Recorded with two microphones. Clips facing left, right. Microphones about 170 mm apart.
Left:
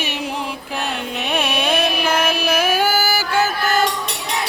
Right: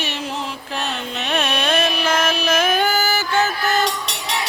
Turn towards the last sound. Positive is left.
turn(degrees=10)  # may be behind; listen again after turning